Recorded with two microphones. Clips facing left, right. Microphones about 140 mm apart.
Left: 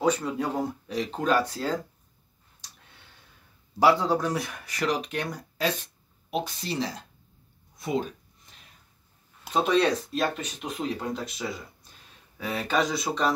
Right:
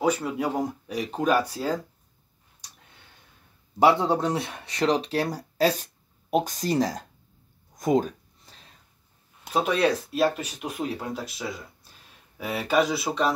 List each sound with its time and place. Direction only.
0.0 s speech: 10° right (ahead or behind)
3.8 s speech: 25° right (ahead or behind); by 7.1 s 45° right (ahead or behind)
7.7 s a sound: 45° right (ahead or behind)
9.5 s speech: 5° right (ahead or behind)